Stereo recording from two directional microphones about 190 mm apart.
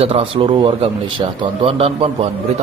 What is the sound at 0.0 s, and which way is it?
Speech, 30° right (ahead or behind).